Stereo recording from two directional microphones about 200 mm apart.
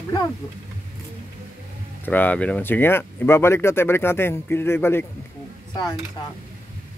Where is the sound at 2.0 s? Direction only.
10° left (ahead or behind).